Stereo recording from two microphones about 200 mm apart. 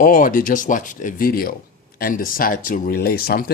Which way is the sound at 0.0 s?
45° left (ahead or behind).